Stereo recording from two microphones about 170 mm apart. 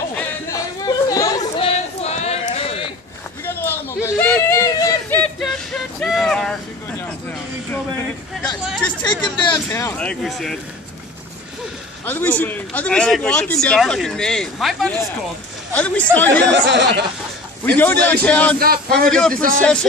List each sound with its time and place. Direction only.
0.5 s chatter: 20° left (ahead or behind)
1.6 s a sound: 40° left (ahead or behind)
3.4 s a sound: 15° left (ahead or behind)
5.2 s a sound: 5° left (ahead or behind)
9.3 s speech: 30° left (ahead or behind)
9.7 s speech: 15° left (ahead or behind)
12.1 s a woman's voice: 10° left (ahead or behind)
16.6 s speech: 90° right
17.7 s a woman's voice: 10° left (ahead or behind)